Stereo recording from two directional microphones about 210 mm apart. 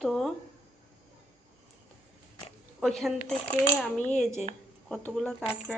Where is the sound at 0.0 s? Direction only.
Centre (ahead or behind).